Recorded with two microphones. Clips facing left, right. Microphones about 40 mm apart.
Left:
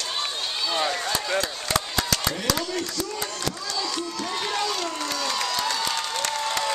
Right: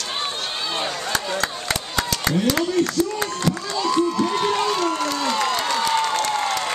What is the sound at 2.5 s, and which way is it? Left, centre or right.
Speech, right.